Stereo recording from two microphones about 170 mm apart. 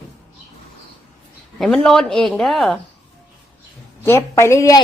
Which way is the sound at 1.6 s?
5° left (ahead or behind).